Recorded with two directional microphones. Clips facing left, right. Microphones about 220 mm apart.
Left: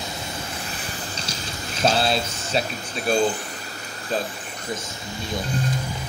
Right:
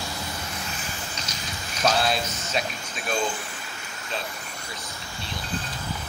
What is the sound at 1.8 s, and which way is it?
Speech, 30° left (ahead or behind).